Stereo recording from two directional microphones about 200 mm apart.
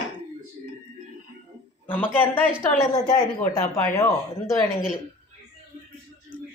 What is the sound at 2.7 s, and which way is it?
A woman's voice, 15° left (ahead or behind).